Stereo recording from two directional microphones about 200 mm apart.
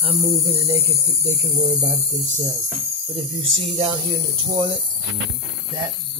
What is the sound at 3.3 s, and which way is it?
Mains hum, 25° right (ahead or behind).